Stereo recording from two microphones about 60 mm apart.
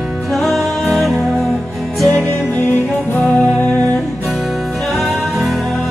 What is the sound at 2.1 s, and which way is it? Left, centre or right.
Music, left.